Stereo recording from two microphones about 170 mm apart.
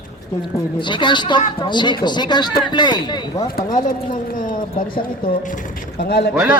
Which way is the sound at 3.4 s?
55° left (ahead or behind).